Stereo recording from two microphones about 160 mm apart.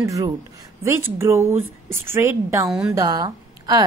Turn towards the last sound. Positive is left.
turn(degrees=-25)  # may be behind; listen again after turning